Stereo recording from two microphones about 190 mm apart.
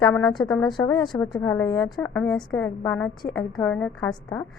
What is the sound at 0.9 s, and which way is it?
Speech, 25° left (ahead or behind).